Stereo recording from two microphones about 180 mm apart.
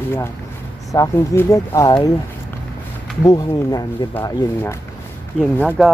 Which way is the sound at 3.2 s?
20° left (ahead or behind).